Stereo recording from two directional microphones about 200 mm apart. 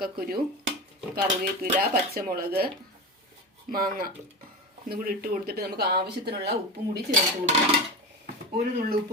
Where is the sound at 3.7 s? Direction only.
45° right (ahead or behind).